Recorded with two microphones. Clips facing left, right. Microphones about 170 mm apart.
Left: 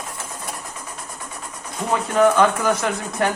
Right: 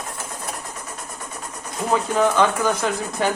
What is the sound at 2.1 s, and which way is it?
Speech, centre (ahead or behind).